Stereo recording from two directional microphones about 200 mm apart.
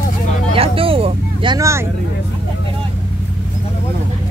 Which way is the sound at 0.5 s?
30° right (ahead or behind).